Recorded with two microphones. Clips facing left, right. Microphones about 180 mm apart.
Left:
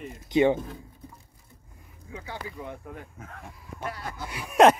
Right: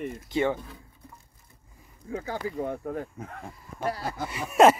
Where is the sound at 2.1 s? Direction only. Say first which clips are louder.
Right 7 dB; 45° right (ahead or behind).